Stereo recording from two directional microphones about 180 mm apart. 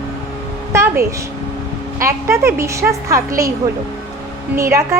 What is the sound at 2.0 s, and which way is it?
A woman's voice, 15° right (ahead or behind).